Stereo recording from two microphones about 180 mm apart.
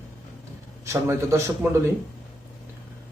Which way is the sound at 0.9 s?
15° right (ahead or behind).